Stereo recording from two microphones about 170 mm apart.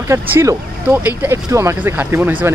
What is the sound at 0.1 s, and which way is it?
Speech, 15° right (ahead or behind).